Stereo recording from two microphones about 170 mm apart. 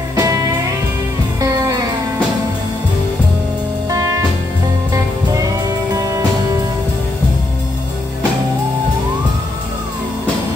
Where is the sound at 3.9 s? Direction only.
20° right (ahead or behind).